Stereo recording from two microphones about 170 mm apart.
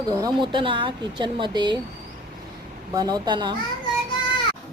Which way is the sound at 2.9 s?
25° right (ahead or behind).